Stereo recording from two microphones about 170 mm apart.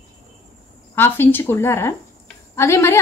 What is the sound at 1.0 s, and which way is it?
A woman's voice, 10° left (ahead or behind).